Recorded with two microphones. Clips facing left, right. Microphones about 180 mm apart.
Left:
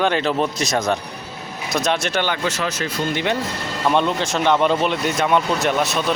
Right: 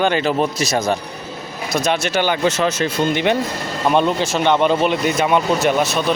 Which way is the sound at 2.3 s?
25° right (ahead or behind).